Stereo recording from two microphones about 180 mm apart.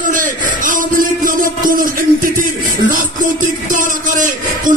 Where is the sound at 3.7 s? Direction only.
45° right (ahead or behind).